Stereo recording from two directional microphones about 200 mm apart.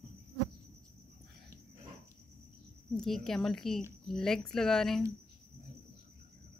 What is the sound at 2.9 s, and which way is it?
Speech, centre (ahead or behind).